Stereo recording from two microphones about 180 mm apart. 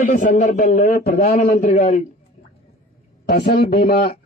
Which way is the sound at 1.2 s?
45° left (ahead or behind).